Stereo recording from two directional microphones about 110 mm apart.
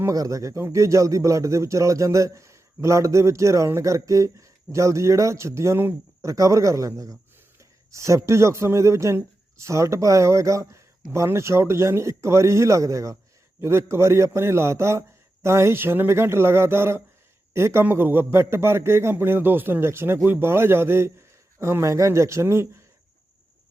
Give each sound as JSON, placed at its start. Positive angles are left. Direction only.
{"t": 0.0, "sound": "a man's voice", "side_deg": -30}